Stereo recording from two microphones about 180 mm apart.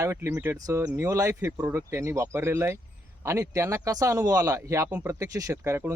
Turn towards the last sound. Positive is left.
turn(degrees=-15)  # may be behind; listen again after turning